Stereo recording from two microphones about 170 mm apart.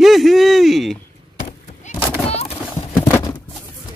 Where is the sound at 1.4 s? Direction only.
40° left (ahead or behind).